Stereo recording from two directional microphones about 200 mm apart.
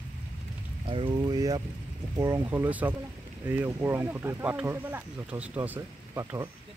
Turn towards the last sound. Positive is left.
turn(degrees=-15)  # may be behind; listen again after turning